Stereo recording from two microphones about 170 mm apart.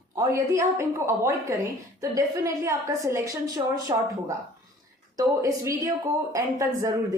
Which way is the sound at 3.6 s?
30° right (ahead or behind).